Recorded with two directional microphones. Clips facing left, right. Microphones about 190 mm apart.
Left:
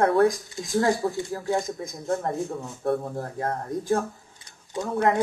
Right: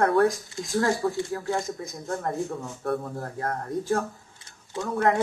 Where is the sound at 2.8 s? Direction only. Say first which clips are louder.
Left 4 dB; 20° left (ahead or behind).